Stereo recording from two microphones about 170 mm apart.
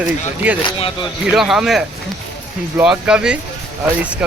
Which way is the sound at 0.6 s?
30° left (ahead or behind).